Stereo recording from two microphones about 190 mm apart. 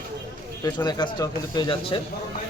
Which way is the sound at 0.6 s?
20° left (ahead or behind).